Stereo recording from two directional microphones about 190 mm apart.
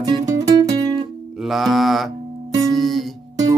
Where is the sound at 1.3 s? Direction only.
Centre (ahead or behind).